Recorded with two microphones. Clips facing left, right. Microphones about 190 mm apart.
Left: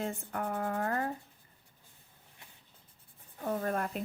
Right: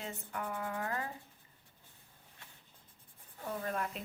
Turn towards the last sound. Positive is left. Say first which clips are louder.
# left 5 dB
turn(degrees=50)  # may be behind; listen again after turning